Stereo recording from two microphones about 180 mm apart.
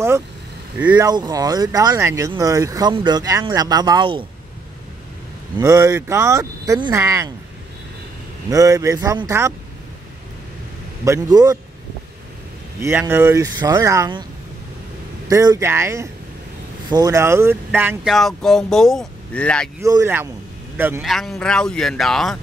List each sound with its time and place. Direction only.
0.7 s speech: 10° right (ahead or behind)
1.0 s speech: 20° right (ahead or behind)
5.6 s speech: 15° right (ahead or behind)
8.5 s speech: 20° right (ahead or behind)
11.1 s speech: 20° right (ahead or behind)
12.8 s speech: 15° right (ahead or behind)
15.2 s speech: 20° right (ahead or behind); by 19.7 s 5° left (ahead or behind)
19.8 s speech: 15° right (ahead or behind)
21.0 s speech: centre (ahead or behind)